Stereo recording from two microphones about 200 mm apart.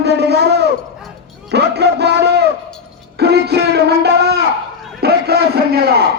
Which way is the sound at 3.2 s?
55° right (ahead or behind).